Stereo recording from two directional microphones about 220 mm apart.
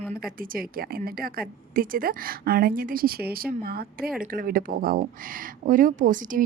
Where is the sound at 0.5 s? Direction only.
40° right (ahead or behind).